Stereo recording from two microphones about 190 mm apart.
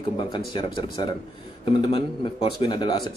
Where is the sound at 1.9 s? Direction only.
25° left (ahead or behind).